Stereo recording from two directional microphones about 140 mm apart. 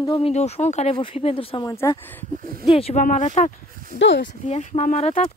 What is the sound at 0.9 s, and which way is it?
Speech, 40° left (ahead or behind).